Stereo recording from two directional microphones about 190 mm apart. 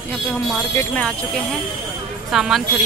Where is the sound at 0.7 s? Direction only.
5° left (ahead or behind).